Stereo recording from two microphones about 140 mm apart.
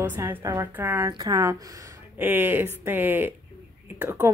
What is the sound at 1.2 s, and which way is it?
A woman's voice, 25° right (ahead or behind).